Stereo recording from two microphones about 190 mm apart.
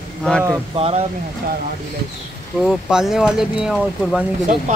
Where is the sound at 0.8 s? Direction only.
25° right (ahead or behind).